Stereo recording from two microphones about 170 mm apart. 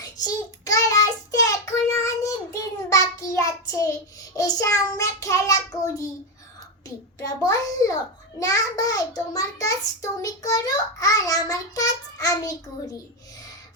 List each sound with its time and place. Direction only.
0.0 s child singing: 20° left (ahead or behind)
6.8 s a child's voice: 20° left (ahead or behind)
8.4 s child singing: 20° left (ahead or behind)